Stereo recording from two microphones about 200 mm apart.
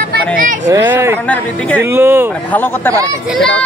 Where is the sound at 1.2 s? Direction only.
5° left (ahead or behind).